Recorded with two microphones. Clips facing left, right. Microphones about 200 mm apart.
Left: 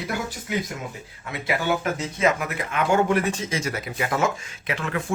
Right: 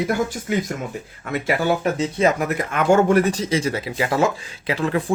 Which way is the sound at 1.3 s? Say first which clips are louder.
Right 4 dB; 40° right (ahead or behind).